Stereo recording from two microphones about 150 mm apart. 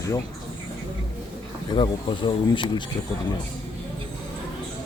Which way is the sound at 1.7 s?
30° left (ahead or behind).